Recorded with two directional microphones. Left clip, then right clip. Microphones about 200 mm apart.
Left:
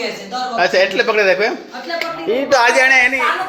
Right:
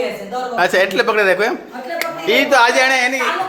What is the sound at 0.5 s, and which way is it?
Speech, 10° right (ahead or behind).